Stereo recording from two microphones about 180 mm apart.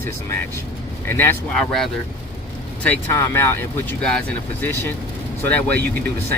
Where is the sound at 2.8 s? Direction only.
10° left (ahead or behind).